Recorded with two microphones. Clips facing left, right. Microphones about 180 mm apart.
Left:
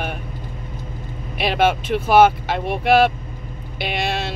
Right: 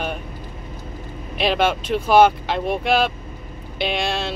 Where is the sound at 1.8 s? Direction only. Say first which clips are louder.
Right 1 dB; 55° left (ahead or behind).